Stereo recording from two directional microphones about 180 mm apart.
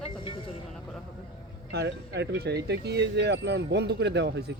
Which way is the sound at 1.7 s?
70° right (ahead or behind).